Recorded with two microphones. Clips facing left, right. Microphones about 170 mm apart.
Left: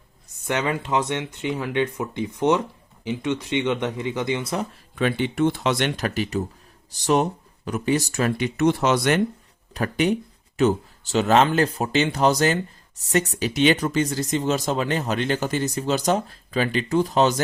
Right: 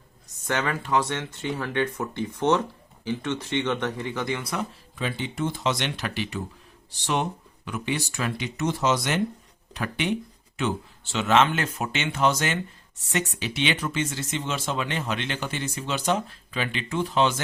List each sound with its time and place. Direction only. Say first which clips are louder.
0.4 s speech: left 3 dB; 15° left (ahead or behind)
4.9 s speech: left 7 dB; 65° left (ahead or behind); by 8.4 s 45° left (ahead or behind)
8.5 s speech: left 4 dB; 60° left (ahead or behind)
9.7 s speech: left 5 dB; 40° left (ahead or behind)